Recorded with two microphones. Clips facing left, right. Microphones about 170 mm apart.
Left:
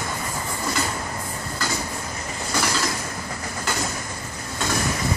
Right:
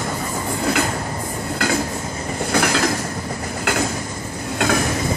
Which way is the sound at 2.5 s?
65° right (ahead or behind).